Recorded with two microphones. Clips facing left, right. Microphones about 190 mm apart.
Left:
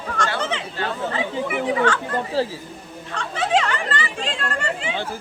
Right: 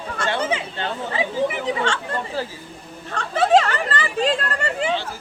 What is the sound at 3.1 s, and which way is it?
Chatter, 40° right (ahead or behind).